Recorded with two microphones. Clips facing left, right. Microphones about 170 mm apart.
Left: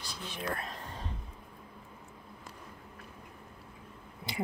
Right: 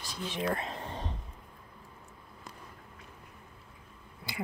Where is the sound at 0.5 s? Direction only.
30° right (ahead or behind).